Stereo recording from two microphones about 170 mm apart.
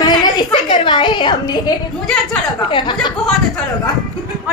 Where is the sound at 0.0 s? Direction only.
25° left (ahead or behind).